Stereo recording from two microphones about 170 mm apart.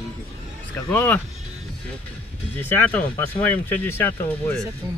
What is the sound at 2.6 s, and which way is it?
Speech, 10° left (ahead or behind).